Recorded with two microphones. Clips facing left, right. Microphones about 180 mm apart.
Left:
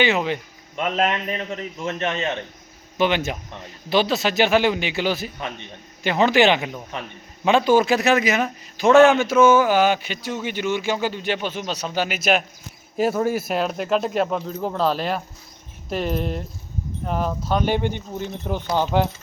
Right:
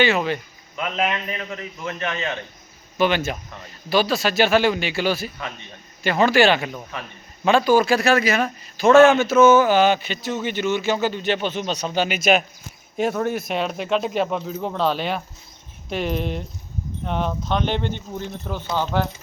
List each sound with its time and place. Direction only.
0.0 s a man's voice: 15° left (ahead or behind)
0.8 s speech: 40° left (ahead or behind)
1.5 s a man's voice: 25° left (ahead or behind)